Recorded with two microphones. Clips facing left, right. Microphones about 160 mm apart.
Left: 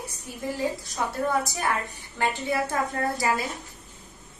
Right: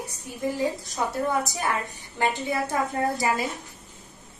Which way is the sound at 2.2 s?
15° right (ahead or behind).